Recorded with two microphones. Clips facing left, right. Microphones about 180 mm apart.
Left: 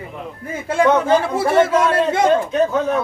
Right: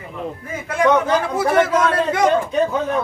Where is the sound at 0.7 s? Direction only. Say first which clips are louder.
Left 2 dB; 30° left (ahead or behind).